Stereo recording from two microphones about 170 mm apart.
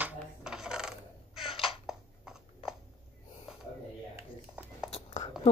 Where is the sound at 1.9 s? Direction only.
5° right (ahead or behind).